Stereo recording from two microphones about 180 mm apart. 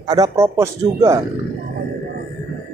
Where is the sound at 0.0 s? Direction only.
20° right (ahead or behind).